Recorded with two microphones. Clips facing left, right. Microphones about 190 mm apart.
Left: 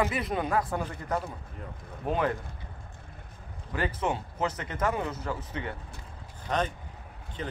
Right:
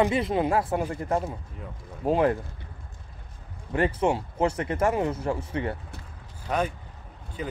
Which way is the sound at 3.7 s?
30° right (ahead or behind).